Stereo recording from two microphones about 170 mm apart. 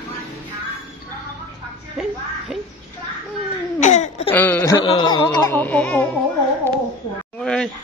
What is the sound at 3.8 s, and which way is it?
Baby cry, 45° left (ahead or behind).